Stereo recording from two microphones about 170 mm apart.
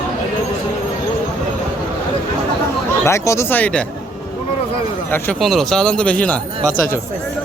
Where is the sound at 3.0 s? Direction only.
15° left (ahead or behind).